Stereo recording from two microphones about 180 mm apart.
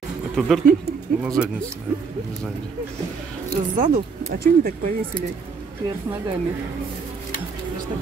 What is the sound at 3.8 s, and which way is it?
Speech, 45° right (ahead or behind).